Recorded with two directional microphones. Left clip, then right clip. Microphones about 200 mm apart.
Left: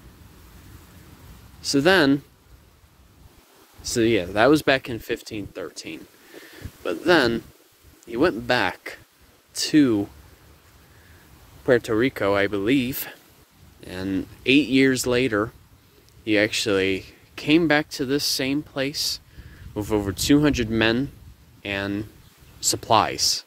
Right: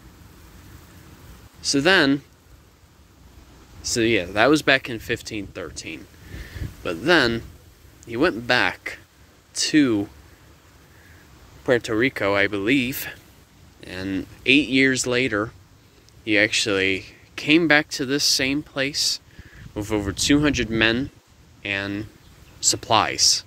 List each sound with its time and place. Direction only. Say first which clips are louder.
1.6 s speech: right 1 dB; 25° left (ahead or behind)
3.8 s speech: even; 30° left (ahead or behind)
11.6 s speech: left 1 dB; 35° left (ahead or behind)
11.9 s speech: even; 20° left (ahead or behind)